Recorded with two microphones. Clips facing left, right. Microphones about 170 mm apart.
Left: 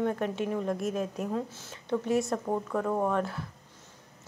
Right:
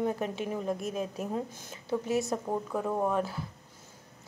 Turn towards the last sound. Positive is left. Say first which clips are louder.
# left 1 dB
turn(degrees=-5)  # may be behind; listen again after turning